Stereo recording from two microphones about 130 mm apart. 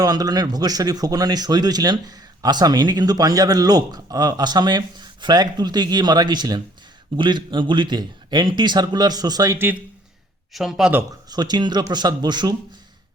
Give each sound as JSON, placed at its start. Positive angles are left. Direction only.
{"t": 0.0, "sound": "speech", "side_deg": -30}
{"t": 10.5, "sound": "a man's voice", "side_deg": 0}
{"t": 11.3, "sound": "speech", "side_deg": -30}